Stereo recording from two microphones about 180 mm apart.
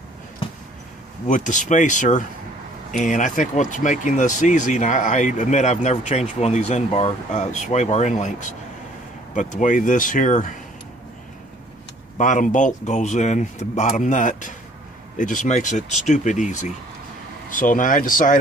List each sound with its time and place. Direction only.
1.2 s speech: 45° left (ahead or behind)
12.2 s speech: 45° left (ahead or behind)